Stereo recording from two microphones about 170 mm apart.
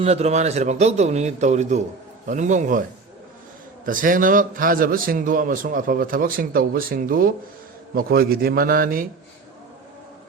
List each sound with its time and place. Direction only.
0.0 s a man's voice: 40° right (ahead or behind)
3.8 s a man's voice: 55° right (ahead or behind)